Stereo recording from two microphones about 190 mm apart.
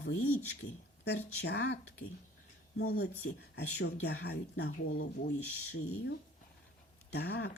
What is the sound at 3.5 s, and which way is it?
A woman's voice, 60° left (ahead or behind).